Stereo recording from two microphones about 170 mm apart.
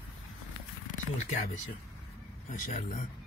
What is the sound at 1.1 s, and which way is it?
Speech, 45° left (ahead or behind).